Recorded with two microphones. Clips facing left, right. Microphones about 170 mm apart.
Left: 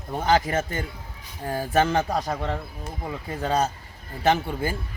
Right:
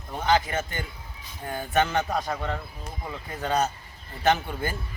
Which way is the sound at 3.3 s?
30° left (ahead or behind).